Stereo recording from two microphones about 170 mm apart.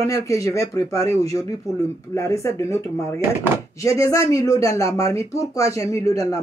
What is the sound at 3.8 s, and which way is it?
Speech, 20° left (ahead or behind).